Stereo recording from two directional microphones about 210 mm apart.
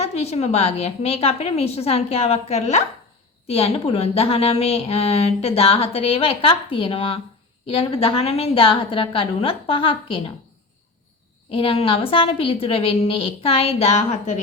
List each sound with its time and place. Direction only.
0.0 s a woman's voice: 30° left (ahead or behind)
11.5 s a woman's voice: 25° left (ahead or behind)